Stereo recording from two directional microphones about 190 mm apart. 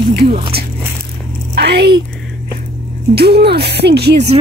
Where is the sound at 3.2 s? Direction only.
60° right (ahead or behind).